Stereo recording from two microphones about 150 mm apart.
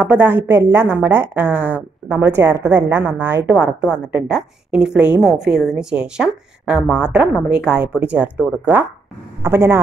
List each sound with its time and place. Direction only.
0.0 s a woman's voice: 10° right (ahead or behind)